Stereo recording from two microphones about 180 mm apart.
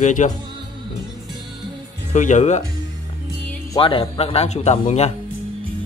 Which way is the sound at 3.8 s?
30° left (ahead or behind).